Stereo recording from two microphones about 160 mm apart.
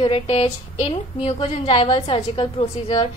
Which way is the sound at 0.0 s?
35° left (ahead or behind).